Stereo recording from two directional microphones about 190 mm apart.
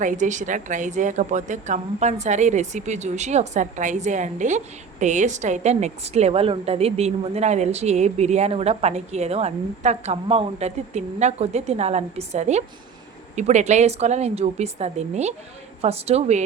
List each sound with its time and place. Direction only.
0.0 s a woman's voice: 40° right (ahead or behind)